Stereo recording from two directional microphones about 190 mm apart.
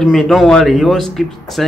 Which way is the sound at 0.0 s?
Centre (ahead or behind).